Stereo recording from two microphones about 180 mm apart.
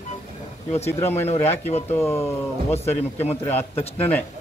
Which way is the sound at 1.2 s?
35° left (ahead or behind).